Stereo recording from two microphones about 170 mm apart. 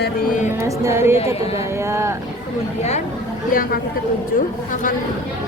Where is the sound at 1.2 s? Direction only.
35° left (ahead or behind).